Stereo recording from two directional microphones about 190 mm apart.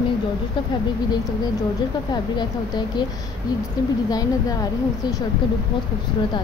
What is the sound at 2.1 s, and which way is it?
Speech, 20° left (ahead or behind).